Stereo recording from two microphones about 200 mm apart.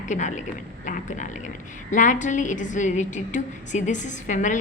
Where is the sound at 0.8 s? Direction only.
40° left (ahead or behind).